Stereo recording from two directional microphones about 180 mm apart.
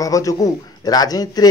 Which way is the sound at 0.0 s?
20° left (ahead or behind).